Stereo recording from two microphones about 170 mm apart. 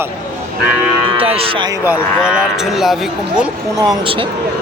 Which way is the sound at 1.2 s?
35° right (ahead or behind).